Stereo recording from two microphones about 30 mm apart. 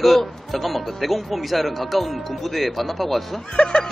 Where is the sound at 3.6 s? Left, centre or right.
Left.